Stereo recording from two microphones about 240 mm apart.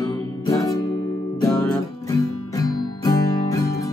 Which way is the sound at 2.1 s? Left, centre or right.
Centre.